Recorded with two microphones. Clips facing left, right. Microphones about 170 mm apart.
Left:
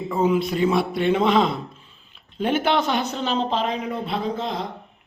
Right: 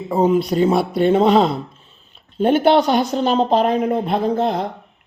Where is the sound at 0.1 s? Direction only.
40° right (ahead or behind).